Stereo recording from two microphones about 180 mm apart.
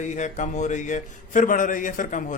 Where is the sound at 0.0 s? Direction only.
45° left (ahead or behind).